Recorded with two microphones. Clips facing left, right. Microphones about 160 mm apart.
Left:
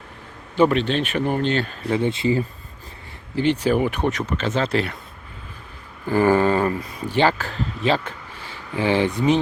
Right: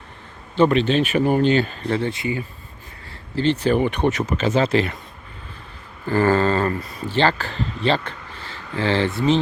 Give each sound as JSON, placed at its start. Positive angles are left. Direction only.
{"t": 0.5, "sound": "speech", "side_deg": 5}
{"t": 2.0, "sound": "speech", "side_deg": 25}
{"t": 3.3, "sound": "speech", "side_deg": 10}
{"t": 6.1, "sound": "speech", "side_deg": 15}